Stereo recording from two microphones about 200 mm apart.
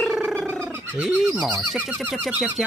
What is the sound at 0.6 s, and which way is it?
Bird, 10° right (ahead or behind).